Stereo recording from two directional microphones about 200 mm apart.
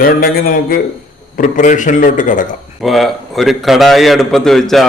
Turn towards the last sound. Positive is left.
turn(degrees=0)  # may be behind; listen again after turning